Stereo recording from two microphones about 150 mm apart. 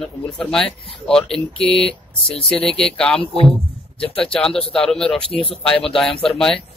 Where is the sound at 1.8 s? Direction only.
40° left (ahead or behind).